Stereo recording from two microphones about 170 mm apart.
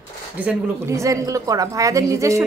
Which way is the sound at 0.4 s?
10° right (ahead or behind).